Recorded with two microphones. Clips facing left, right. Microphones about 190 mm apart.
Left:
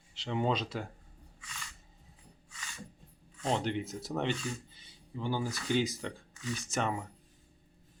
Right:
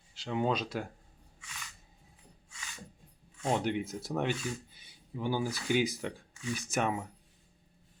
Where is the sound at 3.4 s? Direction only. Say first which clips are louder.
Right 1 dB; 10° right (ahead or behind).